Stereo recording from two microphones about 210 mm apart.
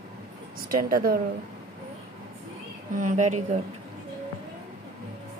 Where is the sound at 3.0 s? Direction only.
35° right (ahead or behind).